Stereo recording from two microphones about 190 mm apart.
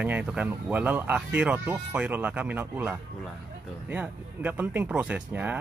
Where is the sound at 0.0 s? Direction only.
5° right (ahead or behind).